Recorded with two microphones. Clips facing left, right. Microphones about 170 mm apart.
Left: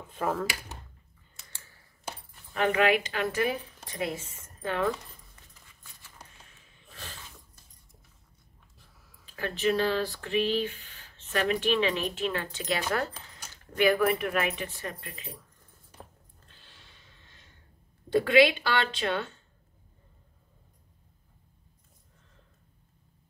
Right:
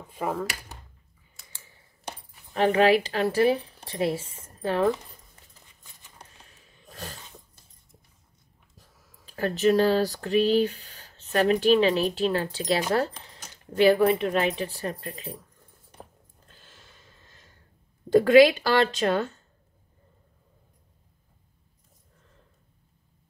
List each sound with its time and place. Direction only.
0.1 s speech: 5° right (ahead or behind)
2.5 s a woman's voice: 35° right (ahead or behind)
6.1 s a sound: 35° right (ahead or behind)
8.7 s speech: 40° right (ahead or behind)
16.4 s a sound: 45° right (ahead or behind)
18.1 s speech: 40° right (ahead or behind)